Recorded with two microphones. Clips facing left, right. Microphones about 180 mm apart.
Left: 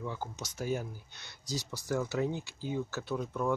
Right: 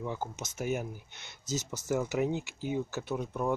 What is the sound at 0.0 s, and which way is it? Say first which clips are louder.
Speech: right 3 dB; 20° right (ahead or behind).